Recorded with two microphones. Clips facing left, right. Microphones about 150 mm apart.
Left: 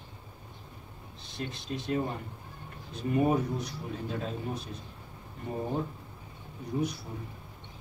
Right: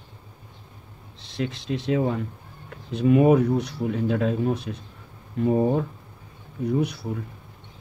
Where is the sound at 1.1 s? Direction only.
90° right.